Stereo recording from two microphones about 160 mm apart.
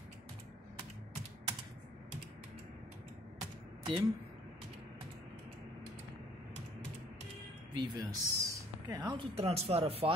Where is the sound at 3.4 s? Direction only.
30° right (ahead or behind).